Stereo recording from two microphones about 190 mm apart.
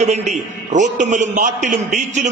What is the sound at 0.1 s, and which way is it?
A man's voice, 35° right (ahead or behind).